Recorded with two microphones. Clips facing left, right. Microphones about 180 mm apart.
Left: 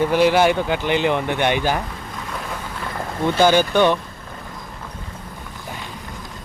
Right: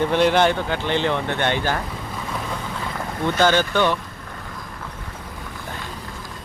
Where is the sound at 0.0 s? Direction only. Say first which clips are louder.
Left 2 dB; 5° left (ahead or behind).